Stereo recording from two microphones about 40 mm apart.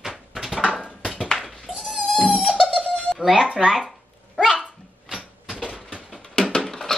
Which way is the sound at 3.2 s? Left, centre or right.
Centre.